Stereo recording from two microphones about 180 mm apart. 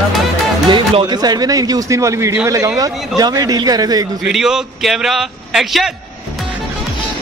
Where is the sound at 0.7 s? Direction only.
25° right (ahead or behind).